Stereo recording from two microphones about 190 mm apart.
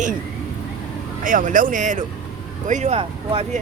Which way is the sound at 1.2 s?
45° right (ahead or behind).